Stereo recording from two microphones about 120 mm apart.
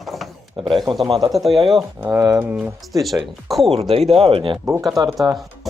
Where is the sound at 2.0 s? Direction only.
30° right (ahead or behind).